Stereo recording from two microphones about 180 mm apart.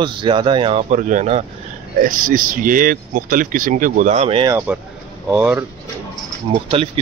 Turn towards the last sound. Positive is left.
turn(degrees=-25)  # may be behind; listen again after turning